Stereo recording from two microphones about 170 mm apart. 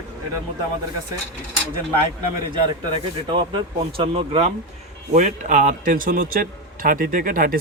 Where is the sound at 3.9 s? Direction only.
35° right (ahead or behind).